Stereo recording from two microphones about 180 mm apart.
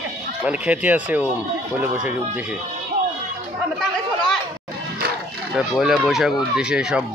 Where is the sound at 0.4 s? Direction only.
5° right (ahead or behind).